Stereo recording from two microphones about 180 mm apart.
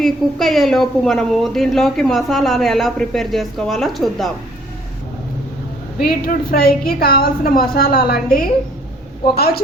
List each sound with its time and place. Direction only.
0.0 s a woman's voice: centre (ahead or behind)
6.0 s a woman's voice: 55° left (ahead or behind)